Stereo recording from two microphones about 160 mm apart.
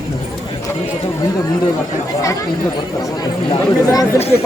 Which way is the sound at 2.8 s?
25° left (ahead or behind).